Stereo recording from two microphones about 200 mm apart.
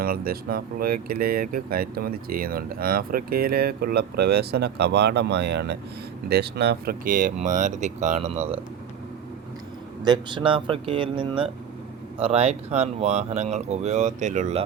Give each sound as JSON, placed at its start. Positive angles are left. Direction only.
{"t": 0.0, "sound": "speech", "side_deg": -50}
{"t": 10.0, "sound": "speech", "side_deg": -20}